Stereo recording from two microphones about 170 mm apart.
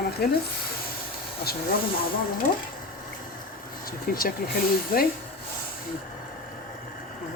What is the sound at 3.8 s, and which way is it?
Speech, 60° left (ahead or behind).